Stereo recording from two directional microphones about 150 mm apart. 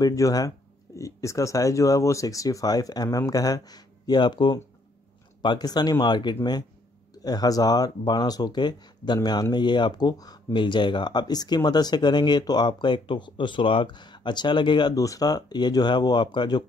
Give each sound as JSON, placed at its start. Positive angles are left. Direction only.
{"t": 0.0, "sound": "speech", "side_deg": 25}